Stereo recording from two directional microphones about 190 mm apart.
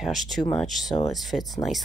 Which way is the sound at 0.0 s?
Centre (ahead or behind).